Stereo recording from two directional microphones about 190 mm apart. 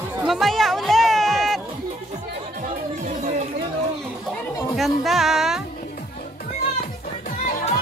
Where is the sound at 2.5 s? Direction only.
45° right (ahead or behind).